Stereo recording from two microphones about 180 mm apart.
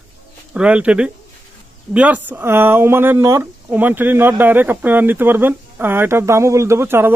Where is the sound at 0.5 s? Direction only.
5° right (ahead or behind).